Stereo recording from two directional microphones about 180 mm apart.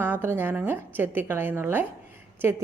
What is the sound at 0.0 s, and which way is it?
Speech, 10° right (ahead or behind).